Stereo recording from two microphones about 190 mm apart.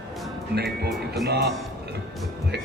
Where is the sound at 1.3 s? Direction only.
60° right (ahead or behind).